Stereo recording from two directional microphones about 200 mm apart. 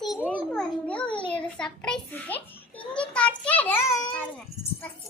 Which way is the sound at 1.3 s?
5° left (ahead or behind).